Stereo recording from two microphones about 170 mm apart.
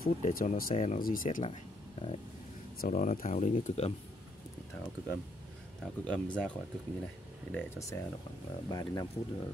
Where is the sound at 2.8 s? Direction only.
50° left (ahead or behind).